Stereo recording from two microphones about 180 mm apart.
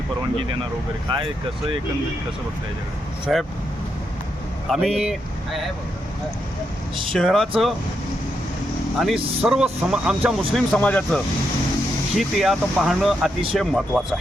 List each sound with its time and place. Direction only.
1.1 s speech: 25° right (ahead or behind)
3.3 s speech: centre (ahead or behind)
4.7 s speech: 5° right (ahead or behind)
7.1 s speech: 5° left (ahead or behind)
9.0 s speech: centre (ahead or behind)